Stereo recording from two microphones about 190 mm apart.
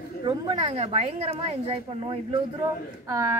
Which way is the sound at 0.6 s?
35° right (ahead or behind).